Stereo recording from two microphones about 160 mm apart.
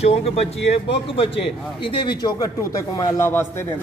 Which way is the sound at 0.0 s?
40° left (ahead or behind).